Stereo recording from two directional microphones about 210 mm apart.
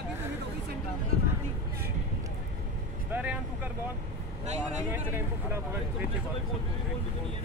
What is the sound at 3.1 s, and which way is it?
Vehicle, 10° right (ahead or behind).